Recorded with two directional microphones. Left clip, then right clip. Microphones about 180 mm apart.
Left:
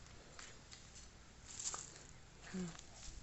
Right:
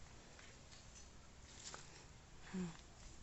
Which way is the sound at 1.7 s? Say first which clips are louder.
Left 7 dB; 70° left (ahead or behind).